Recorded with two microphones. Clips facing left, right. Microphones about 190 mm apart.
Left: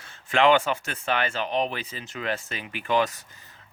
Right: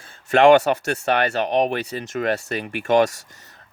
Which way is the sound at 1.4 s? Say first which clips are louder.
Right 7 dB; 45° right (ahead or behind).